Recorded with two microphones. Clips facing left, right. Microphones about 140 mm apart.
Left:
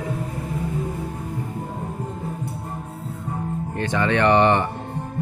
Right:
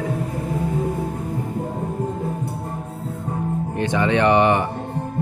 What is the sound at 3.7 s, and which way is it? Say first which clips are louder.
Speech: right 2 dB; 20° right (ahead or behind).